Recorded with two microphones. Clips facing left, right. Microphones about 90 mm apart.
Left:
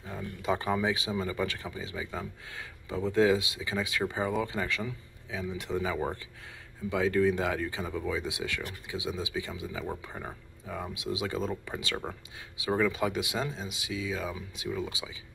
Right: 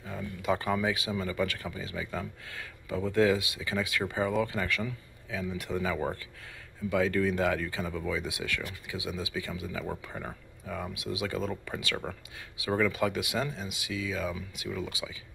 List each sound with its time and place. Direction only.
0.4 s speech: 25° left (ahead or behind)